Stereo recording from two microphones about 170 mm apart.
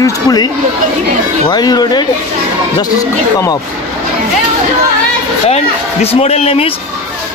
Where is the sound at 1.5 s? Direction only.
25° left (ahead or behind).